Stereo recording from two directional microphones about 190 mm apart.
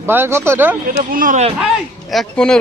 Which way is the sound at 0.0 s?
10° right (ahead or behind).